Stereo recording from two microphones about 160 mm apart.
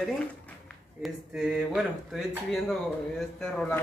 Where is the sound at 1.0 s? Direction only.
Centre (ahead or behind).